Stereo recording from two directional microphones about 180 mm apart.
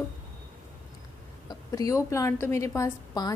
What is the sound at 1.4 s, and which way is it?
A woman's voice, 20° left (ahead or behind).